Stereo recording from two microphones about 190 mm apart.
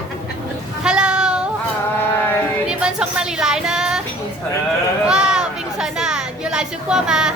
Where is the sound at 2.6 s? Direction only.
5° right (ahead or behind).